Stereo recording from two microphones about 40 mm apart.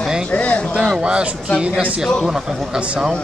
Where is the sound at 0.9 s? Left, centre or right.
Right.